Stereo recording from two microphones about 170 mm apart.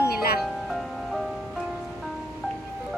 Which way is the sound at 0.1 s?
65° left (ahead or behind).